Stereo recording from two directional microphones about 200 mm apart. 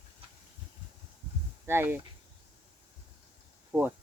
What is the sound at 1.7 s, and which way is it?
Speech, 10° right (ahead or behind).